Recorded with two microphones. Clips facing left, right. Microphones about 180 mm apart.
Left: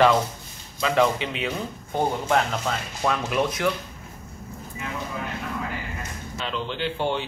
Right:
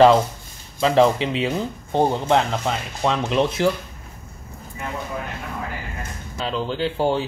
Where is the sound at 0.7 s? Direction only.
30° right (ahead or behind).